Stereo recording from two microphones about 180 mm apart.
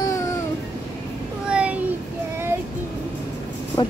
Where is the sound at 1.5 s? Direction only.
5° right (ahead or behind).